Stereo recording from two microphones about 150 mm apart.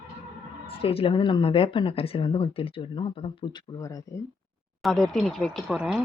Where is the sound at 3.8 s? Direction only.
20° left (ahead or behind).